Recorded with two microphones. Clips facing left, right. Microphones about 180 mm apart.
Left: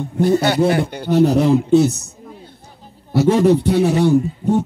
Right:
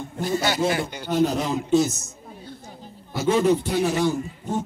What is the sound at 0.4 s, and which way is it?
Speech, 60° left (ahead or behind).